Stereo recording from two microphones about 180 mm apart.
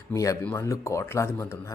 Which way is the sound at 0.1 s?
15° left (ahead or behind).